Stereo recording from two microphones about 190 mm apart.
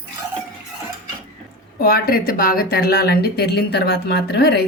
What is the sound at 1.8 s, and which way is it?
A woman's voice, 55° left (ahead or behind).